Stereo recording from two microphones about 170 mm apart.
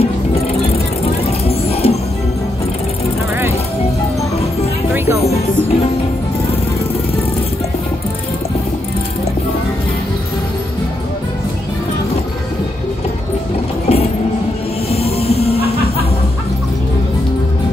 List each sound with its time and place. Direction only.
1.4 s music: 35° left (ahead or behind)
13.8 s music: 40° left (ahead or behind)